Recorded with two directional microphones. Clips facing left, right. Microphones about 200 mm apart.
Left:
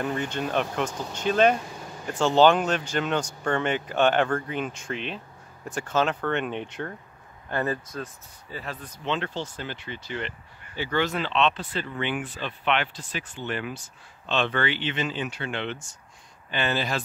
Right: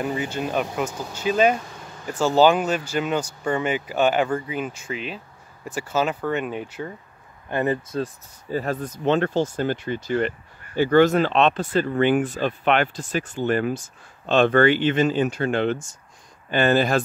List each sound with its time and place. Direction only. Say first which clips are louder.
0.0 s speech: right 2 dB; 5° right (ahead or behind)
1.6 s a sound: left 1 dB; 10° left (ahead or behind)
2.0 s speech: right 2 dB; 5° right (ahead or behind)
7.4 s speech: right 5 dB; 20° right (ahead or behind)
8.0 s speech: right 8 dB; 45° right (ahead or behind)